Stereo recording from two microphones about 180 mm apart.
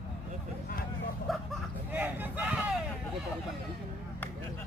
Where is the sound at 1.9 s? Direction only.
10° right (ahead or behind).